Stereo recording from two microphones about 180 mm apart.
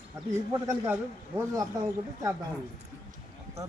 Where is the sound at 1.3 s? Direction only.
15° right (ahead or behind).